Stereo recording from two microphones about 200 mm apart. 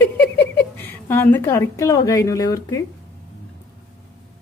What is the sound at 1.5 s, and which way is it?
Speech, 15° left (ahead or behind).